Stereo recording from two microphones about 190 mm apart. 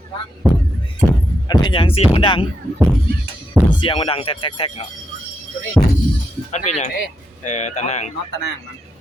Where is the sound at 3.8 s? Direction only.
30° left (ahead or behind).